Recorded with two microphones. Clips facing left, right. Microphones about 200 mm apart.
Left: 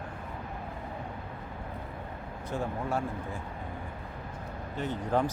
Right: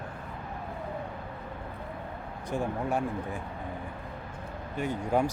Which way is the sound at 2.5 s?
15° right (ahead or behind).